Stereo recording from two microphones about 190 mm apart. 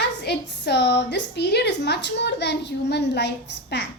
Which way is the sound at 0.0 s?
60° left (ahead or behind).